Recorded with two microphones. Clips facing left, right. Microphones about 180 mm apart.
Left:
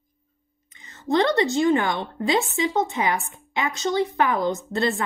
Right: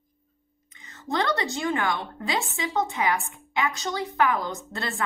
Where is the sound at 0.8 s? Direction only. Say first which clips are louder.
Left 6 dB; 25° left (ahead or behind).